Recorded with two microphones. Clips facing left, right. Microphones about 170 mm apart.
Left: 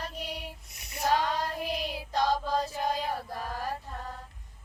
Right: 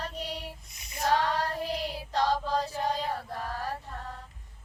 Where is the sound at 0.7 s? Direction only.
70° left (ahead or behind).